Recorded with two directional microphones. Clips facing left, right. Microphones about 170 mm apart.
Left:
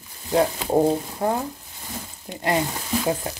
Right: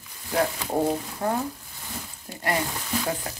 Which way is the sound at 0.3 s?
25° left (ahead or behind).